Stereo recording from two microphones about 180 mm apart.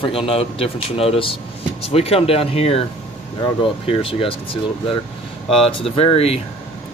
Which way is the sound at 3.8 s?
30° left (ahead or behind).